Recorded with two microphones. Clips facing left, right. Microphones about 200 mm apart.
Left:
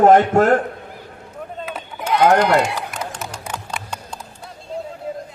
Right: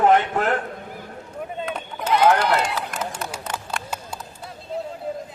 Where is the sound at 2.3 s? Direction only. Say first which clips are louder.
Left 5 dB; 40° left (ahead or behind).